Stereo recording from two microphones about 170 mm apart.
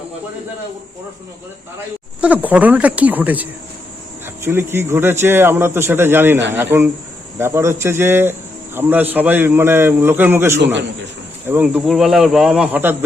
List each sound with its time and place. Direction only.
2.2 s speech: 10° right (ahead or behind)